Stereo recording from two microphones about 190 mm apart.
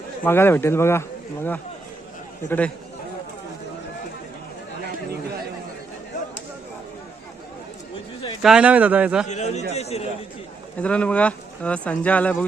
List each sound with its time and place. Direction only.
0.3 s speech: 10° left (ahead or behind)
8.4 s speech: 5° right (ahead or behind)
9.2 s a man's voice: 35° left (ahead or behind)
10.8 s speech: 5° left (ahead or behind)